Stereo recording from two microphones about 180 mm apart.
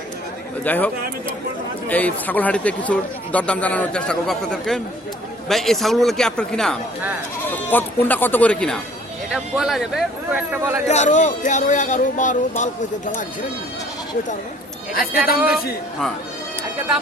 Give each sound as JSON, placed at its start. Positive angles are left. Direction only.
{"t": 0.6, "sound": "a man's voice", "side_deg": 10}
{"t": 1.9, "sound": "a man's voice", "side_deg": 10}
{"t": 10.8, "sound": "speech", "side_deg": 40}
{"t": 15.4, "sound": "a man's voice", "side_deg": -10}